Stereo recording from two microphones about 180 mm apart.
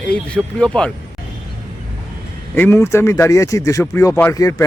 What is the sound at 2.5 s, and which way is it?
Speech, 15° left (ahead or behind).